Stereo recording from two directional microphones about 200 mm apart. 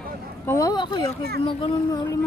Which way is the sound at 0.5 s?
20° left (ahead or behind).